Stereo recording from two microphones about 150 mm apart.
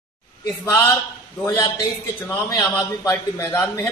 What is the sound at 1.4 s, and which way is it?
Speech, 20° left (ahead or behind).